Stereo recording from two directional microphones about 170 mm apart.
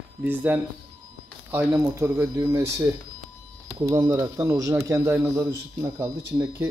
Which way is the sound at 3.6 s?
20° right (ahead or behind).